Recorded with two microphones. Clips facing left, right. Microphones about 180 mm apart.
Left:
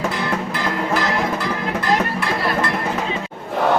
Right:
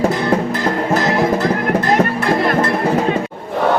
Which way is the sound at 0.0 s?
40° right (ahead or behind).